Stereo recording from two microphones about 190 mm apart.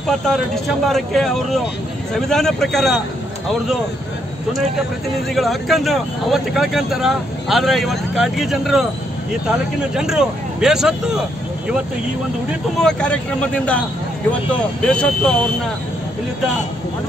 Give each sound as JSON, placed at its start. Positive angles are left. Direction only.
{"t": 0.8, "sound": "speech", "side_deg": 0}
{"t": 5.3, "sound": "speech", "side_deg": 0}
{"t": 12.8, "sound": "speech", "side_deg": 5}